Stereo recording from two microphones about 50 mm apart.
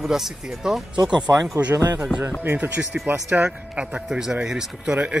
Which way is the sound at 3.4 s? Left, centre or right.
Right.